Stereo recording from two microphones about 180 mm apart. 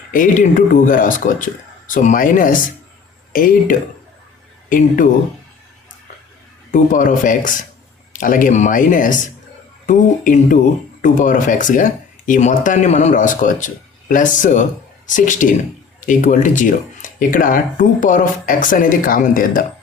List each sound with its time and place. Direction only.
0.1 s speech: 50° left (ahead or behind)
6.7 s speech: 45° left (ahead or behind)